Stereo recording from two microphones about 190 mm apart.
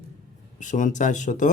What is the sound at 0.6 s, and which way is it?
Speech, 40° left (ahead or behind).